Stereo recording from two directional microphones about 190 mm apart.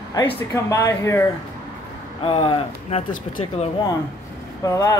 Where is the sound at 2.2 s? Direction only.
30° left (ahead or behind).